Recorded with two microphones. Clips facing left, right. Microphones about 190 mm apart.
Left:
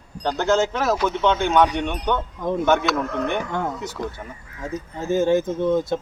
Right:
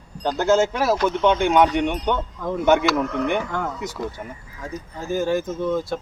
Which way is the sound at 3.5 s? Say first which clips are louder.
Left 1 dB; 20° left (ahead or behind).